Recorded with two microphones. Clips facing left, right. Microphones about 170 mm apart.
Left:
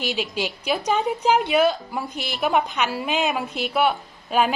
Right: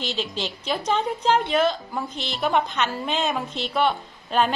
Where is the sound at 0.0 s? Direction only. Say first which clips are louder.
Left 3 dB; 10° left (ahead or behind).